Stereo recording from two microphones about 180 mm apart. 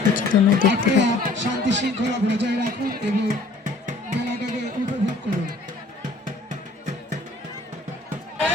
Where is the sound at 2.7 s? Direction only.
45° right (ahead or behind).